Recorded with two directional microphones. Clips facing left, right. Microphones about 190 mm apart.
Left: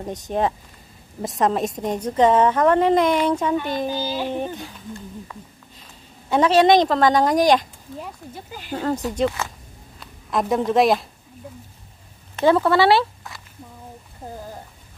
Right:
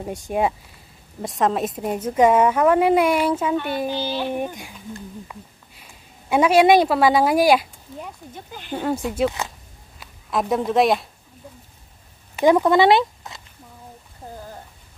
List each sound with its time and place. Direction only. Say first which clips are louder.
0.0 s a woman's voice: even; 10° right (ahead or behind)
3.9 s a sound: even; 10° left (ahead or behind)
4.3 s a woman's voice: even; 10° right (ahead or behind)
8.4 s speech: right 1 dB; 5° left (ahead or behind)
8.7 s a woman's voice: even; 10° right (ahead or behind)
12.4 s speech: right 1 dB; 15° right (ahead or behind)